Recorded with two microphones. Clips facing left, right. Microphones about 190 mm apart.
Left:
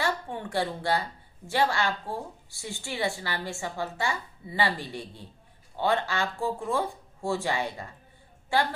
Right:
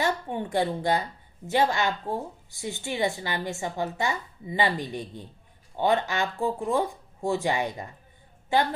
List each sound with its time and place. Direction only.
0.0 s a woman's voice: 20° right (ahead or behind)